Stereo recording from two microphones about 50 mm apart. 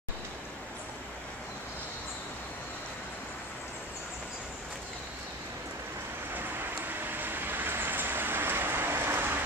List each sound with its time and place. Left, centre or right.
6.9 s vehicle: right